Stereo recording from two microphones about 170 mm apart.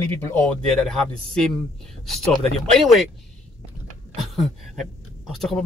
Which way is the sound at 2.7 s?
Centre (ahead or behind).